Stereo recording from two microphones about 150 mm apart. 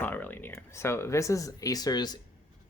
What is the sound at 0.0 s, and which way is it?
Speech, 10° left (ahead or behind).